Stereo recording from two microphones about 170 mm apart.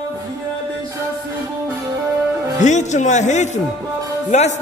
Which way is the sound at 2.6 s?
45° left (ahead or behind).